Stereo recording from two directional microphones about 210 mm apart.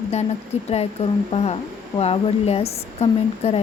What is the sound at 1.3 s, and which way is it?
Speech, 30° left (ahead or behind).